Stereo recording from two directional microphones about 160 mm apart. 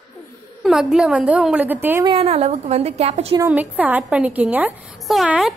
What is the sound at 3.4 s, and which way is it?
A woman's voice, 10° right (ahead or behind).